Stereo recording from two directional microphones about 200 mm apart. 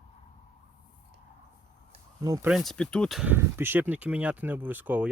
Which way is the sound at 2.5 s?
Centre (ahead or behind).